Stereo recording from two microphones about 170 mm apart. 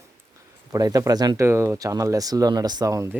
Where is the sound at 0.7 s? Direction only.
20° right (ahead or behind).